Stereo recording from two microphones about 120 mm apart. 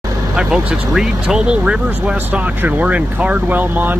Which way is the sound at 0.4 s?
5° right (ahead or behind).